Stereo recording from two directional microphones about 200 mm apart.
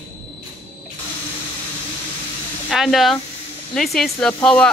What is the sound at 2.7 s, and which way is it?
Speech, centre (ahead or behind).